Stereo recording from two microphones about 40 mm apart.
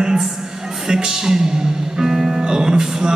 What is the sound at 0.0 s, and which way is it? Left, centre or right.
Music, centre.